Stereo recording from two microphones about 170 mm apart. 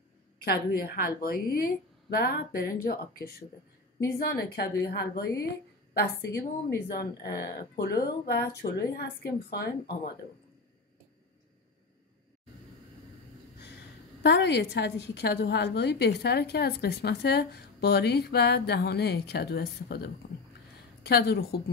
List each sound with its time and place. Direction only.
0.4 s a woman's voice: 65° left (ahead or behind)
4.2 s a woman's voice: 75° left (ahead or behind)
14.2 s a woman's voice: 85° left; by 21.5 s 70° left (ahead or behind)